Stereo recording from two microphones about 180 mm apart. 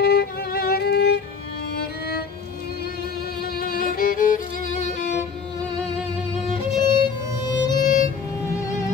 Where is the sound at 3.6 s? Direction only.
50° left (ahead or behind).